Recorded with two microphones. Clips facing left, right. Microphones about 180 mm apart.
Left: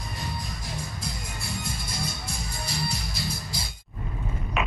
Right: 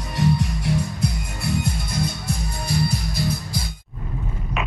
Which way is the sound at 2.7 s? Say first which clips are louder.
Right 10 dB; 55° right (ahead or behind).